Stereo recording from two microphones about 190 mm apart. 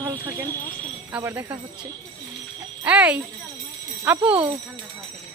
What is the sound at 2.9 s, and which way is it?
Speech, 5° right (ahead or behind).